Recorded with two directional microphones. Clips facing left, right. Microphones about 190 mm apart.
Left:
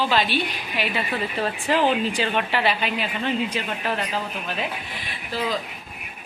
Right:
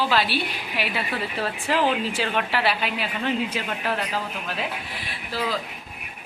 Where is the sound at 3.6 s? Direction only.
10° left (ahead or behind).